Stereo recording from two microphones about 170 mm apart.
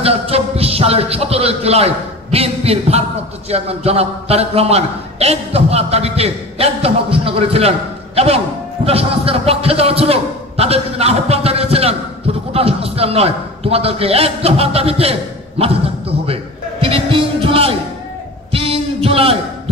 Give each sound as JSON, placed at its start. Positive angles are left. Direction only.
{"t": 0.0, "sound": "a man's voice", "side_deg": -35}
{"t": 8.8, "sound": "a man's voice", "side_deg": -35}
{"t": 16.8, "sound": "music", "side_deg": -30}
{"t": 18.5, "sound": "a sound", "side_deg": -35}